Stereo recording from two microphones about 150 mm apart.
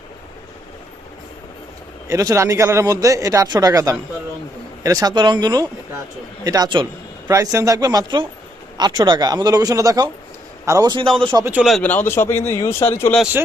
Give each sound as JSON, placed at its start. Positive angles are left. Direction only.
{"t": 2.0, "sound": "speech", "side_deg": -20}
{"t": 11.0, "sound": "speech", "side_deg": 5}
{"t": 11.8, "sound": "speech", "side_deg": 10}